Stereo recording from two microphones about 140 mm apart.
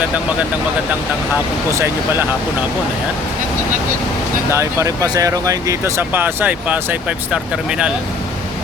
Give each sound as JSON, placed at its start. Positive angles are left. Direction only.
{"t": 4.5, "sound": "speech", "side_deg": -20}